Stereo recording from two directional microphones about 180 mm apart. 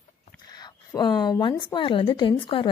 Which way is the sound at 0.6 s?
25° left (ahead or behind).